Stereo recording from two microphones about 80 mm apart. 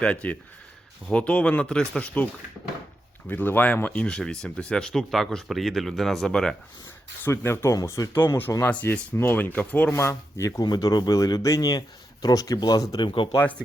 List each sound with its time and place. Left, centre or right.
0.0 s speech: centre
7.3 s speech: left
7.7 s speech: left
8.6 s speech: left
9.9 s speech: left
10.6 s speech: left
13.0 s speech: left